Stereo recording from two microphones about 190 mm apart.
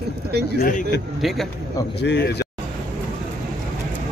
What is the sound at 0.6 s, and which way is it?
Speech, 50° left (ahead or behind).